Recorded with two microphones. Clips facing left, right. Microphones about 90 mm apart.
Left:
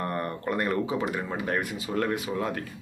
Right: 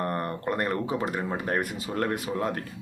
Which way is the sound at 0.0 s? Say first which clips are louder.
Right 1 dB; 40° right (ahead or behind).